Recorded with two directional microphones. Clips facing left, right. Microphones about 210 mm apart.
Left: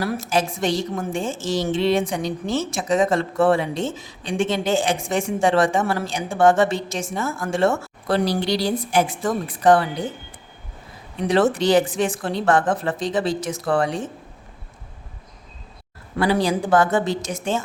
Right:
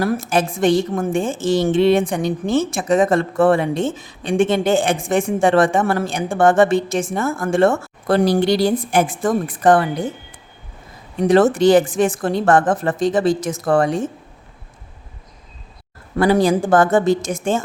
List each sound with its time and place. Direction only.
0.0 s a woman's voice: 55° right (ahead or behind)
11.2 s a woman's voice: 45° right (ahead or behind)
16.1 s a woman's voice: 45° right (ahead or behind)